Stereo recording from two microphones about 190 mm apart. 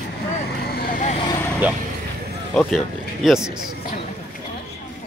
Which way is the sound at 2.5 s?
Centre (ahead or behind).